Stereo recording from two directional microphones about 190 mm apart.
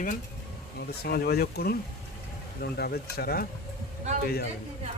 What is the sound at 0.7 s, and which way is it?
Speech, 55° left (ahead or behind).